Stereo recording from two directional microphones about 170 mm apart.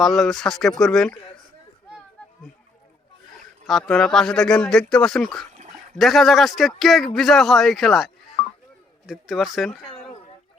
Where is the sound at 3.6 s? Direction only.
Centre (ahead or behind).